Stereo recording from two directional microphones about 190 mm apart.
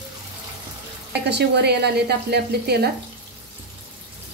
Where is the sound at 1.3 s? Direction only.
60° right (ahead or behind).